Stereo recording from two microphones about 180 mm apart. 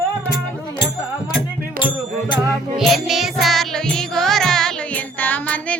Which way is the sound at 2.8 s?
Centre (ahead or behind).